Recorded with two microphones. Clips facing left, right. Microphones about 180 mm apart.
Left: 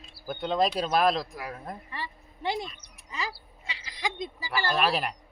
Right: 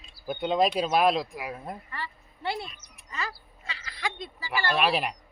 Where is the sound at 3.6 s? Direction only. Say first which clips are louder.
Even; 15° left (ahead or behind).